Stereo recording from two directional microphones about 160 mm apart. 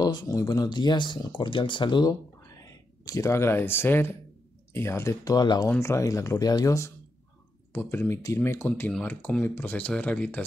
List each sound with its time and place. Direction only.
0.0 s speech: 25° left (ahead or behind); by 10.4 s 10° left (ahead or behind)